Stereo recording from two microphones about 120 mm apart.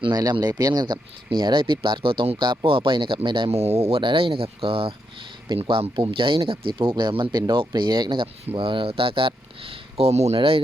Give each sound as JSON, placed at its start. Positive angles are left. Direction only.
{"t": 0.0, "sound": "speech", "side_deg": -35}
{"t": 3.5, "sound": "speech", "side_deg": -55}
{"t": 10.3, "sound": "speech", "side_deg": -50}